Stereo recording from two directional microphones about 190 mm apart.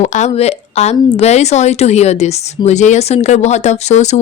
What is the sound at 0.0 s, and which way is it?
Speech, 40° left (ahead or behind).